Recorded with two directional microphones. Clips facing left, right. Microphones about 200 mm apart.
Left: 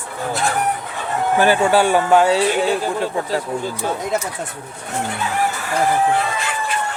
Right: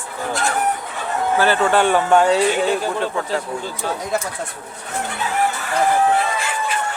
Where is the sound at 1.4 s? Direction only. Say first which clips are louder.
Left 2 dB; 10° left (ahead or behind).